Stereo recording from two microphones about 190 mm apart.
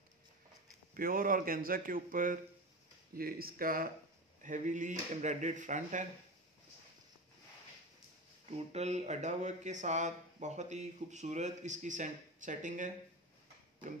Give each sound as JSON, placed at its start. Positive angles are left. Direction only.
{"t": 0.9, "sound": "speech", "side_deg": -50}
{"t": 8.5, "sound": "speech", "side_deg": -35}